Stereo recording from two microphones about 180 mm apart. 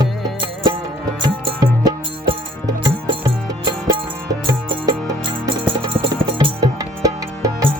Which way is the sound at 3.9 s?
25° right (ahead or behind).